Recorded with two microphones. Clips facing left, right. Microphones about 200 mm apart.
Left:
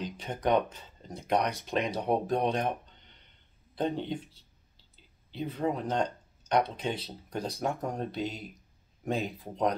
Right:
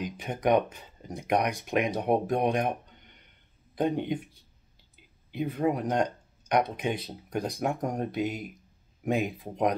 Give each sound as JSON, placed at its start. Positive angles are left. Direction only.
{"t": 0.0, "sound": "speech", "side_deg": -15}